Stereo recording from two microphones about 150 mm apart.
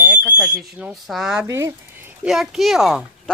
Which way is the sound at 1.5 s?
20° right (ahead or behind).